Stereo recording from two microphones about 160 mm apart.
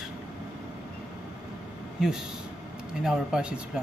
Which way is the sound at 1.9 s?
5° right (ahead or behind).